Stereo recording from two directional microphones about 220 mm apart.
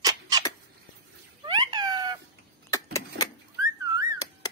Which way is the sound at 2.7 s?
15° left (ahead or behind).